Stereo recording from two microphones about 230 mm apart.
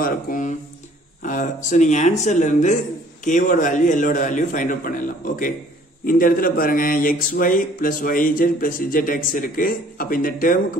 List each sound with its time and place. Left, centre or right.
0.0 s speech: left